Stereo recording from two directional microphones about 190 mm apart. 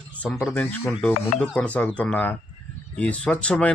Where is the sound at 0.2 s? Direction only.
5° left (ahead or behind).